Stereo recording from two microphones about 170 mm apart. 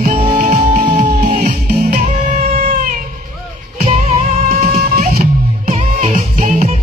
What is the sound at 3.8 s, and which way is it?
Music, 40° right (ahead or behind).